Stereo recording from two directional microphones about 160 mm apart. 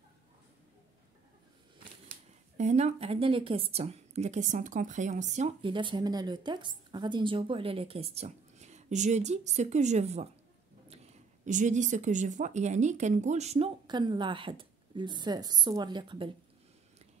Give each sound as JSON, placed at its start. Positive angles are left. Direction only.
{"t": 2.0, "sound": "a woman's voice", "side_deg": -45}
{"t": 5.6, "sound": "a woman's voice", "side_deg": -30}
{"t": 13.8, "sound": "a woman's voice", "side_deg": -30}